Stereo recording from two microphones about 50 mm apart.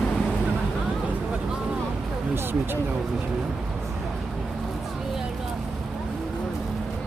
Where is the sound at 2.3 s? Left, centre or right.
Right.